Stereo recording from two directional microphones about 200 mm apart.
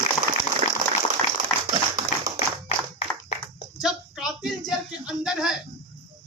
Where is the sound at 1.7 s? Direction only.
20° right (ahead or behind).